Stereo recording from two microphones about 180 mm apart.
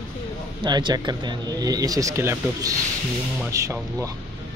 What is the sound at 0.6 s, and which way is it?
Speech, 25° right (ahead or behind).